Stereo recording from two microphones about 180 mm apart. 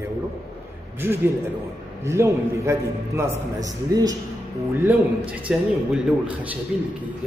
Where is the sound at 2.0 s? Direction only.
15° right (ahead or behind).